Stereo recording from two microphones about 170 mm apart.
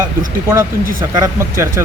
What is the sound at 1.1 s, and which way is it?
Speech, 20° right (ahead or behind).